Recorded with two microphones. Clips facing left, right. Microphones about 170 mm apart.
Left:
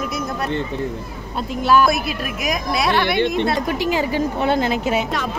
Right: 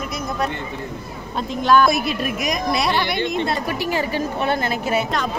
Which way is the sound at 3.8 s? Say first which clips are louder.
Left 3 dB; 15° left (ahead or behind).